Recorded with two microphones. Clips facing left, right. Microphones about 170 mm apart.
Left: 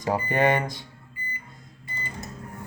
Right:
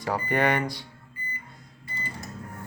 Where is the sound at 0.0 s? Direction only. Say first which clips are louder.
Left 2 dB; 20° left (ahead or behind).